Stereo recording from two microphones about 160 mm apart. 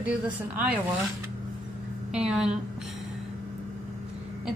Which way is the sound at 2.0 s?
5° right (ahead or behind).